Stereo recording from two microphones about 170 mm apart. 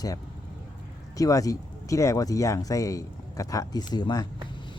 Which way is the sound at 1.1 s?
20° left (ahead or behind).